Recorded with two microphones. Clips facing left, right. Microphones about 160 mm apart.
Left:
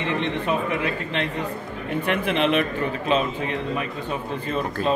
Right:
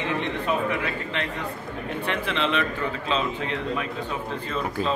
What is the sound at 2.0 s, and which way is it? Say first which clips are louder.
Speech: left 5 dB; 15° left (ahead or behind).